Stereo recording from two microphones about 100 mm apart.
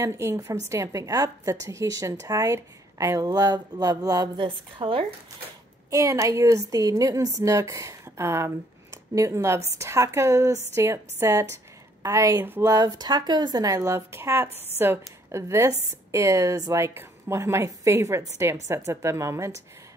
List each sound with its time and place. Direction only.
0.0 s a woman's voice: 30° right (ahead or behind)
4.4 s a woman's voice: 55° right (ahead or behind)
5.9 s a woman's voice: 30° right (ahead or behind)
12.7 s speech: 40° right (ahead or behind)
13.7 s speech: 25° right (ahead or behind)